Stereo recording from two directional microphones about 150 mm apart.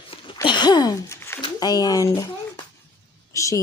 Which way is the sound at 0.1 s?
35° left (ahead or behind).